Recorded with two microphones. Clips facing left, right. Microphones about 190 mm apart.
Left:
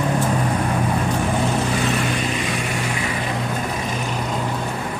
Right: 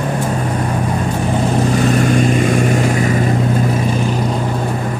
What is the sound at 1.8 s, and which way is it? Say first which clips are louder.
Vehicle: right 9 dB; 45° right (ahead or behind).